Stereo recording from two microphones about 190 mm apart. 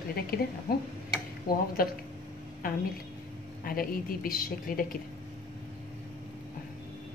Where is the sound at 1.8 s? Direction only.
50° left (ahead or behind).